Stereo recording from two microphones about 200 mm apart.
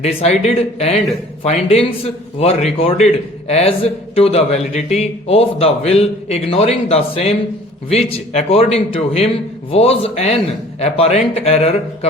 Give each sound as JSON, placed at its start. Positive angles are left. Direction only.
{"t": 0.0, "sound": "a man's voice", "side_deg": 30}